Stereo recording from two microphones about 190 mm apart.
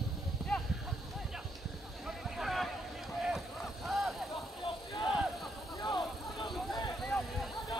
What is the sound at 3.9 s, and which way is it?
Vehicle, centre (ahead or behind).